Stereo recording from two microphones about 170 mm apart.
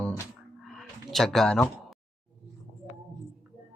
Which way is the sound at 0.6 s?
Centre (ahead or behind).